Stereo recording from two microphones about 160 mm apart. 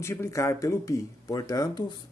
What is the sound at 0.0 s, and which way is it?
Speech, 15° left (ahead or behind).